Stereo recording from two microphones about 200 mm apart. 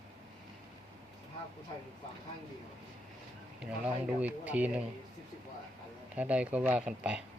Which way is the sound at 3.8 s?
5° right (ahead or behind).